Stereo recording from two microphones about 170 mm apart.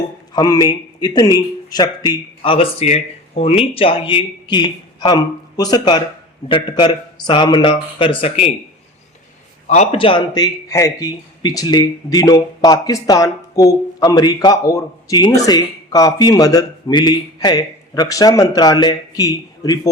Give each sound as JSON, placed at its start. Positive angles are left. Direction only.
{"t": 0.3, "sound": "a man's voice", "side_deg": 20}
{"t": 9.6, "sound": "a man's voice", "side_deg": 40}